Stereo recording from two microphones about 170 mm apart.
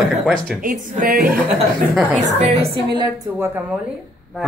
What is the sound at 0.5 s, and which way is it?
Speech, 55° right (ahead or behind).